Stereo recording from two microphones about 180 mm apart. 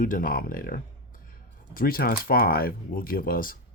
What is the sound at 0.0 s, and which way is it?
Speech, 50° left (ahead or behind).